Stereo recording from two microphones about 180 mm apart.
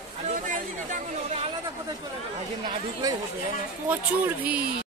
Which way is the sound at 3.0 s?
20° right (ahead or behind).